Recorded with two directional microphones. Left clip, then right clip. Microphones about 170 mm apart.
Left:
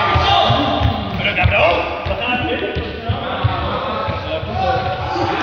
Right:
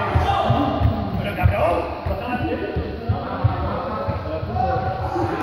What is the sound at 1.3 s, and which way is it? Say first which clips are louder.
Basketball bounce: left 7 dB; 20° right (ahead or behind).